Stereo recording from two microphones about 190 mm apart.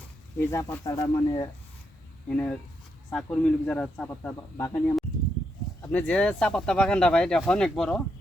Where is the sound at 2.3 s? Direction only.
5° left (ahead or behind).